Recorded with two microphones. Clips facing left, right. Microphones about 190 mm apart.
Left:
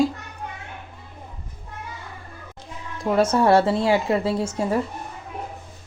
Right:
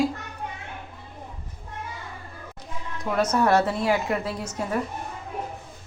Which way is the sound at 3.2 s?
30° left (ahead or behind).